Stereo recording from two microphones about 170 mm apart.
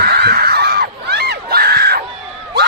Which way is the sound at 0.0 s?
70° right (ahead or behind).